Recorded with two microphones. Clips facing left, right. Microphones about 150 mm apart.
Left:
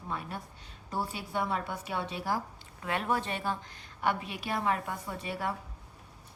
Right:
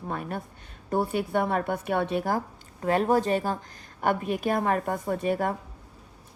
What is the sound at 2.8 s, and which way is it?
A woman's voice, 40° right (ahead or behind).